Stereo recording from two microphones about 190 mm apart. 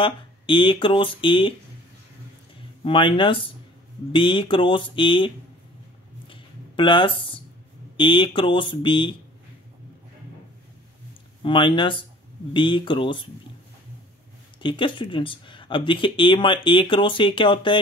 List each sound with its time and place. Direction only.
0.0 s speech: 25° left (ahead or behind)
2.8 s speech: 25° left (ahead or behind)
6.2 s a sound: 25° left (ahead or behind)
8.0 s speech: 25° left (ahead or behind)
11.4 s speech: 25° left (ahead or behind)
14.6 s speech: 25° left (ahead or behind)